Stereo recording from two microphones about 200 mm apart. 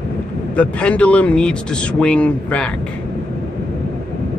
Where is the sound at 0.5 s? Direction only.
5° left (ahead or behind).